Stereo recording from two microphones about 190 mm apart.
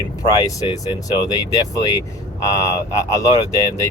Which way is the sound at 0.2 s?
20° left (ahead or behind).